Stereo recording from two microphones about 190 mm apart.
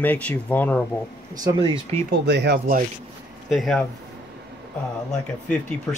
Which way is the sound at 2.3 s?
60° right (ahead or behind).